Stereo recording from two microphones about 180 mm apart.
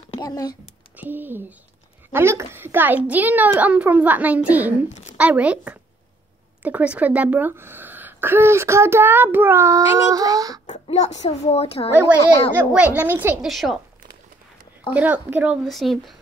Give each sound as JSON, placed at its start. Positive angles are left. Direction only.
{"t": 0.1, "sound": "speech", "side_deg": 25}
{"t": 0.9, "sound": "speech", "side_deg": -10}
{"t": 10.7, "sound": "a sound", "side_deg": 40}
{"t": 11.2, "sound": "speech", "side_deg": 35}
{"t": 12.5, "sound": "speech", "side_deg": -10}
{"t": 15.0, "sound": "speech", "side_deg": -10}